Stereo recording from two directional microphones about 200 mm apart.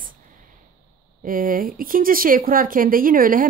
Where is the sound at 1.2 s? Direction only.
45° right (ahead or behind).